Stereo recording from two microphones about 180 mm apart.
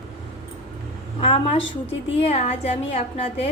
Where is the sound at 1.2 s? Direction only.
30° left (ahead or behind).